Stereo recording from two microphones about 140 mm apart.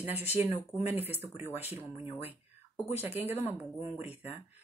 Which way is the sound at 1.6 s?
15° right (ahead or behind).